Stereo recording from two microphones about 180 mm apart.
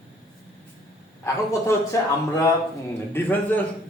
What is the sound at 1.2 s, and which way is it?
Speech, 15° left (ahead or behind).